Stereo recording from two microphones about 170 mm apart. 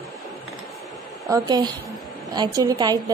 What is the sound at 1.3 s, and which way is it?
A woman's voice, 25° right (ahead or behind).